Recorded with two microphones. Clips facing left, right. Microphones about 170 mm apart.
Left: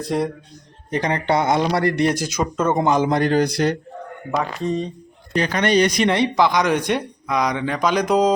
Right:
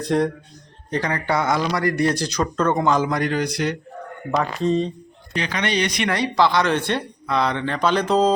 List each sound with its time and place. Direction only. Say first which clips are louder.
0.0 s speech: right 2 dB; centre (ahead or behind)
0.9 s a man's voice: left 3 dB; 20° left (ahead or behind)
2.2 s speech: even; 10° left (ahead or behind)
3.1 s speech: left 4 dB; 30° left (ahead or behind)
4.3 s speech: right 2 dB; 10° left (ahead or behind)
5.3 s speech: left 6 dB; 45° left (ahead or behind)
6.1 s speech: left 2 dB; 20° left (ahead or behind)